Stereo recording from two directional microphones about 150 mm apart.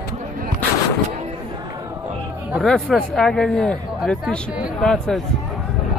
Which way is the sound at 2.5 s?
Centre (ahead or behind).